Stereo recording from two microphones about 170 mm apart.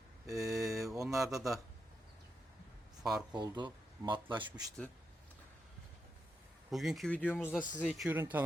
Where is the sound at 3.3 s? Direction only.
25° right (ahead or behind).